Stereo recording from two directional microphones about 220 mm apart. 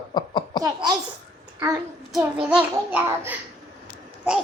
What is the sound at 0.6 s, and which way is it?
Speech, 15° right (ahead or behind).